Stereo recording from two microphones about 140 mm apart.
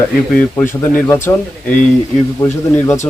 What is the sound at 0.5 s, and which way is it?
Speech, 15° left (ahead or behind).